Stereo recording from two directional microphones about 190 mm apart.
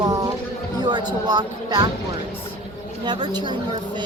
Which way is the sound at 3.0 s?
25° right (ahead or behind).